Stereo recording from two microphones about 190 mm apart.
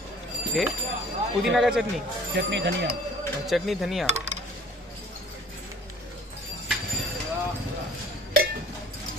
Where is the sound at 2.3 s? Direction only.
65° right (ahead or behind).